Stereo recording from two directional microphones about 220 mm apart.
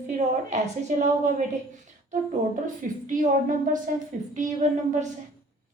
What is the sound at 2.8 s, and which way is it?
Speech, 40° right (ahead or behind).